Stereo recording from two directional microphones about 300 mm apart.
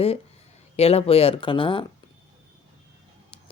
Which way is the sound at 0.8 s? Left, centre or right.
Centre.